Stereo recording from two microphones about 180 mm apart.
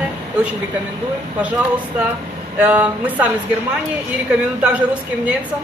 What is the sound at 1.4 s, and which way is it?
A woman's voice, 10° right (ahead or behind).